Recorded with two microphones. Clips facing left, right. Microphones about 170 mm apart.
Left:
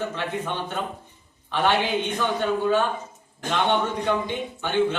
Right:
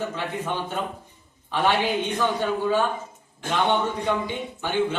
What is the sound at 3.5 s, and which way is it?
Speech, 10° right (ahead or behind).